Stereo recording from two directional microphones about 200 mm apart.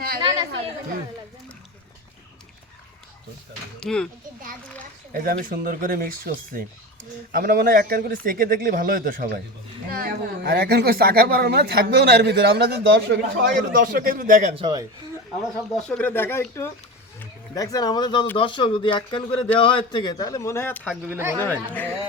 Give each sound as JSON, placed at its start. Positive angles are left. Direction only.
{"t": 3.8, "sound": "speech", "side_deg": 5}
{"t": 5.1, "sound": "speech", "side_deg": -45}
{"t": 14.5, "sound": "speech", "side_deg": -20}
{"t": 15.9, "sound": "a man's voice", "side_deg": 10}
{"t": 20.9, "sound": "speech", "side_deg": -10}
{"t": 21.3, "sound": "speech", "side_deg": 10}